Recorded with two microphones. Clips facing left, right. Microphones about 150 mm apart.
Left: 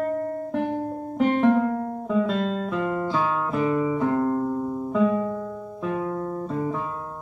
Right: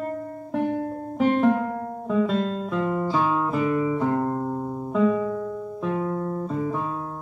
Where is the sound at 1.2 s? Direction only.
Centre (ahead or behind).